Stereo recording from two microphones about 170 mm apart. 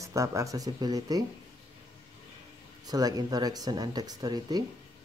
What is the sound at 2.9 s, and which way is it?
Speech, 20° right (ahead or behind).